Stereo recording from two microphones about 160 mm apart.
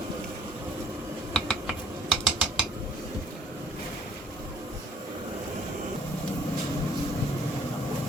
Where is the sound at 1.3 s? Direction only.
Centre (ahead or behind).